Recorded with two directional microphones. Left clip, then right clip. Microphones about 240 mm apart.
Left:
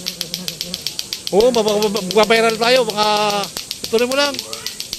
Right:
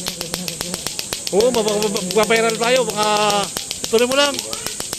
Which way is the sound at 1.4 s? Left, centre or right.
Centre.